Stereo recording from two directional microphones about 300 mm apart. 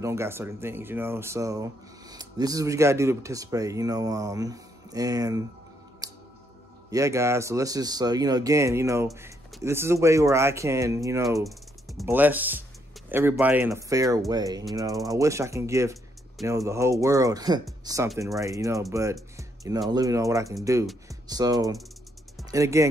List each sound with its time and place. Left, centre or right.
0.0 s speech: centre
6.0 s music: centre
6.9 s speech: centre
11.4 s speech: centre
19.3 s music: centre
19.9 s speech: centre